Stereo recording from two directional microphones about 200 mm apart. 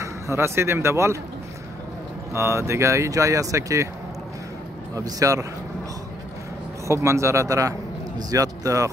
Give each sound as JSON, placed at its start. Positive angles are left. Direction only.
{"t": 0.0, "sound": "speech", "side_deg": -15}
{"t": 2.3, "sound": "speech", "side_deg": -15}
{"t": 4.9, "sound": "speech", "side_deg": -15}
{"t": 6.9, "sound": "speech", "side_deg": -15}